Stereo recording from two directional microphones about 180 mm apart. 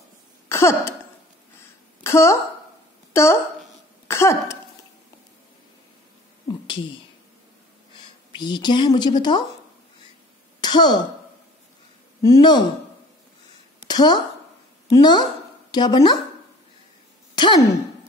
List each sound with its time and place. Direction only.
0.5 s cough: 15° left (ahead or behind)
2.0 s speech: 15° left (ahead or behind)
3.1 s a sound: 15° left (ahead or behind)
4.1 s cough: 15° left (ahead or behind)
8.4 s a woman's voice: 25° left (ahead or behind)
10.6 s speech: 25° left (ahead or behind)
12.2 s a woman's voice: 20° left (ahead or behind)
13.8 s a woman's voice: 25° left (ahead or behind)
17.4 s speech: 25° left (ahead or behind)